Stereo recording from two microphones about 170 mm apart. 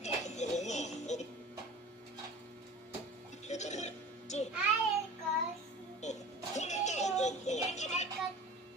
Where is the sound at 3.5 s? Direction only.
40° left (ahead or behind).